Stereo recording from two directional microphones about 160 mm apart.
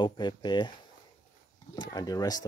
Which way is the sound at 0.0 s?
30° left (ahead or behind).